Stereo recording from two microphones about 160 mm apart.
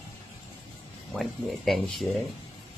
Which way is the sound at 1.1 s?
Centre (ahead or behind).